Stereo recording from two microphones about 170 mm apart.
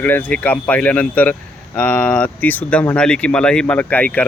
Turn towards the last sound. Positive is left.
turn(degrees=10)  # may be behind; listen again after turning